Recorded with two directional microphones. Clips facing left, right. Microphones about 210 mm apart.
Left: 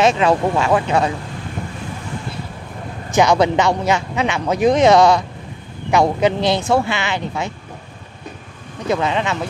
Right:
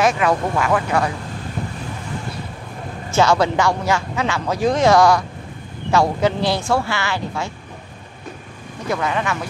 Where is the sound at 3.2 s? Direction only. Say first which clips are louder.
Left 2 dB; 20° left (ahead or behind).